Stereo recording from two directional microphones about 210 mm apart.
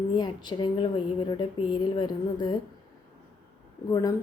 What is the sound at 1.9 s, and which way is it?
Speech, 20° left (ahead or behind).